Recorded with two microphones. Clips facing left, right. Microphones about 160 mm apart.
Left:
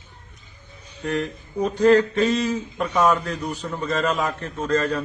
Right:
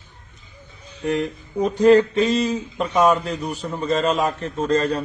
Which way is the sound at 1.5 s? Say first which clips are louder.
Right 2 dB; 15° right (ahead or behind).